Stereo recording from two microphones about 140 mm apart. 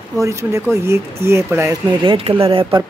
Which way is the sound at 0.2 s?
20° right (ahead or behind).